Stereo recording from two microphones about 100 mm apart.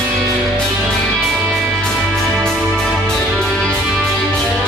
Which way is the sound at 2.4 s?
5° left (ahead or behind).